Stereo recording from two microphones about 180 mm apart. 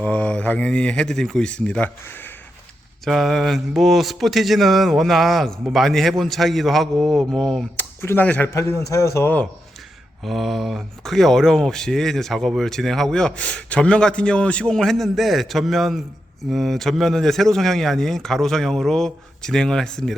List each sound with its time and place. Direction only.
0.0 s speech: 5° left (ahead or behind)
3.0 s speech: centre (ahead or behind)
10.2 s speech: centre (ahead or behind)